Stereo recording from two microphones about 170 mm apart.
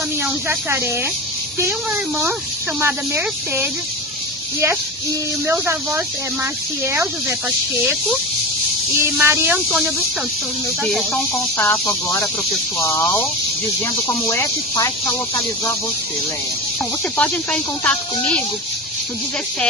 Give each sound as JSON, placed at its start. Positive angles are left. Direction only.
{"t": 0.2, "sound": "speech", "side_deg": -15}
{"t": 5.5, "sound": "speech", "side_deg": -15}
{"t": 9.0, "sound": "speech", "side_deg": -15}
{"t": 9.6, "sound": "speech", "side_deg": 0}
{"t": 10.8, "sound": "speech", "side_deg": 10}
{"t": 14.3, "sound": "speech", "side_deg": 20}
{"t": 17.2, "sound": "speech", "side_deg": 10}